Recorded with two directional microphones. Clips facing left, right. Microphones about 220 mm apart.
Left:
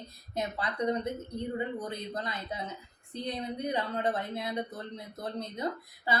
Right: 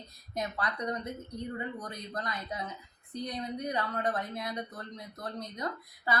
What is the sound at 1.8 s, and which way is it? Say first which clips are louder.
A woman's voice: left 3 dB; 25° left (ahead or behind).